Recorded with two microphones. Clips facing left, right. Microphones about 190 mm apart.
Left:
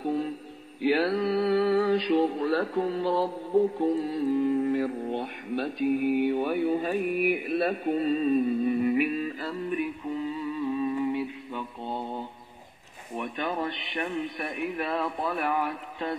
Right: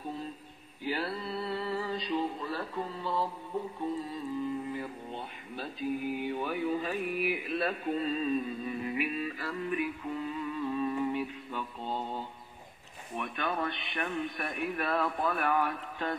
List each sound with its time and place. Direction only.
0.0 s mantra: 70° left (ahead or behind); by 9.3 s 45° left (ahead or behind)
10.2 s mantra: 10° left (ahead or behind)
13.1 s speech: 20° left (ahead or behind)